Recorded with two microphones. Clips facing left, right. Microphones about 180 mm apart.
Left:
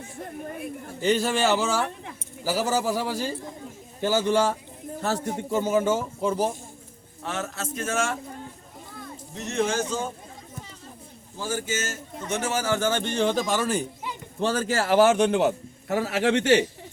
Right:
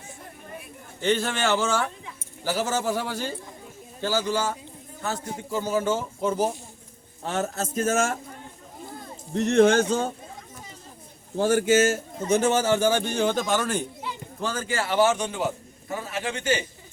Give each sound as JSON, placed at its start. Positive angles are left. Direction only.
{"t": 1.2, "sound": "speech", "side_deg": 5}
{"t": 2.6, "sound": "a man's voice", "side_deg": 35}
{"t": 2.8, "sound": "speech", "side_deg": 5}
{"t": 4.0, "sound": "a man's voice", "side_deg": 25}
{"t": 5.5, "sound": "a man's voice", "side_deg": 20}
{"t": 6.2, "sound": "speech", "side_deg": 0}
{"t": 7.3, "sound": "a man's voice", "side_deg": -35}
{"t": 9.3, "sound": "speech", "side_deg": -60}
{"t": 11.3, "sound": "speech", "side_deg": -65}
{"t": 12.4, "sound": "speech", "side_deg": -30}
{"t": 14.3, "sound": "a man's voice", "side_deg": 30}
{"t": 15.1, "sound": "a man's voice", "side_deg": 65}